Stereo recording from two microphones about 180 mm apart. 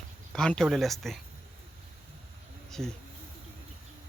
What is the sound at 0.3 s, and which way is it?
Speech, 5° left (ahead or behind).